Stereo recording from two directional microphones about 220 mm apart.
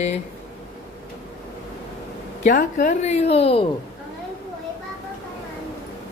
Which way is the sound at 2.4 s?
35° left (ahead or behind).